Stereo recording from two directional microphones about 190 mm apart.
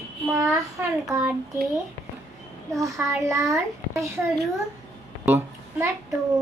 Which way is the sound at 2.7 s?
15° right (ahead or behind).